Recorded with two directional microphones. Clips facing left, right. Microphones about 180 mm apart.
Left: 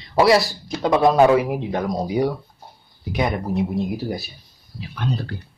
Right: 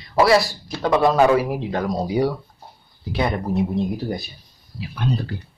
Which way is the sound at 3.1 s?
15° left (ahead or behind).